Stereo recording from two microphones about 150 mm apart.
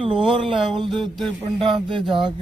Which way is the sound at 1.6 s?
35° right (ahead or behind).